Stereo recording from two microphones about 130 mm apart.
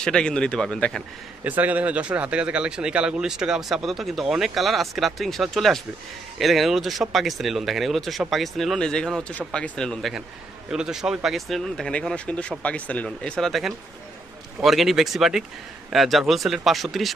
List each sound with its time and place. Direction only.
0.0 s speech: 5° left (ahead or behind)
1.4 s speech: 15° right (ahead or behind)